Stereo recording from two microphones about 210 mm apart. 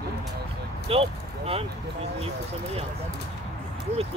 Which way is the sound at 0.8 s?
25° right (ahead or behind).